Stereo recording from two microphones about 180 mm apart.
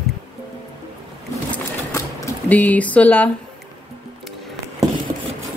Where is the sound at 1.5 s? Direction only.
15° left (ahead or behind).